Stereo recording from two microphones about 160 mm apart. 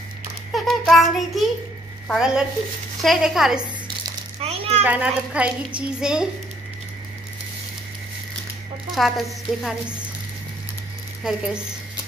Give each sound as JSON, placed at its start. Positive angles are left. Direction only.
{"t": 0.7, "sound": "a sound", "side_deg": 0}
{"t": 2.0, "sound": "a woman's voice", "side_deg": -5}
{"t": 4.4, "sound": "a sound", "side_deg": -40}
{"t": 4.8, "sound": "a woman's voice", "side_deg": -10}
{"t": 8.9, "sound": "a woman's voice", "side_deg": 0}
{"t": 11.2, "sound": "a woman's voice", "side_deg": -5}